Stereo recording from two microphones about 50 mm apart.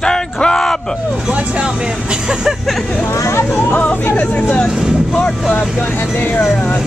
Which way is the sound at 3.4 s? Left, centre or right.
Left.